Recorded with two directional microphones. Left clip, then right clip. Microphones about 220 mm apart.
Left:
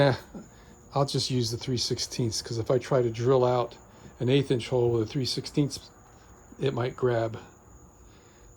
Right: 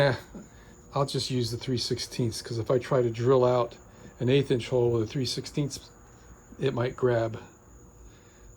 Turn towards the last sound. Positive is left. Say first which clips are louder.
# right 1 dB
turn(degrees=10)  # may be behind; listen again after turning